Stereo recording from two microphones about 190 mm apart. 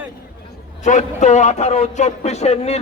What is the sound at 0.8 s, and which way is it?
A man's voice, 40° left (ahead or behind).